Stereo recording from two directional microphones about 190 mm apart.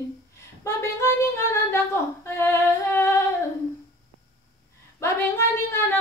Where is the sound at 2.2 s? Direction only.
15° left (ahead or behind).